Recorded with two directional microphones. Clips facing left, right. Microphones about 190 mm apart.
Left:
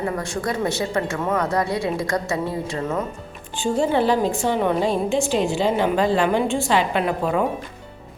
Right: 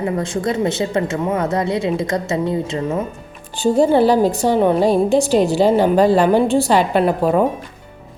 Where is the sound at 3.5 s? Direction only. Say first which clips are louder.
Right 7 dB; 35° right (ahead or behind).